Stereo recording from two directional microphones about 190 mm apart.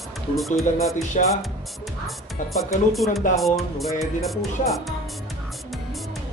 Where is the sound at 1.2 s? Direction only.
40° left (ahead or behind).